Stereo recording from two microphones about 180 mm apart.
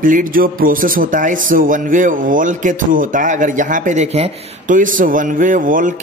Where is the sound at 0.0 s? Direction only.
50° right (ahead or behind).